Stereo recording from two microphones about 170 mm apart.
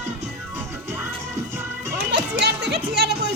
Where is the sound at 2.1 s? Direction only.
80° right.